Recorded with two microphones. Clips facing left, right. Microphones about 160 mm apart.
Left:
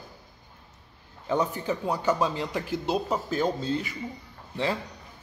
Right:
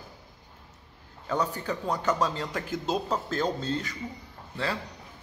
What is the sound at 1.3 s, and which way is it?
A man's voice, 15° left (ahead or behind).